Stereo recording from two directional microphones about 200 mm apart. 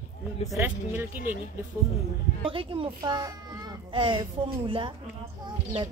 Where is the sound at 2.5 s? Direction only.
25° right (ahead or behind).